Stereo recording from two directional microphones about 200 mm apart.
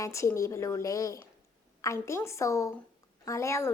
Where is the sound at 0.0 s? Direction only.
15° left (ahead or behind).